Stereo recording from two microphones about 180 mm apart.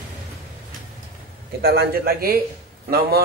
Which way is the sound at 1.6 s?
60° right (ahead or behind).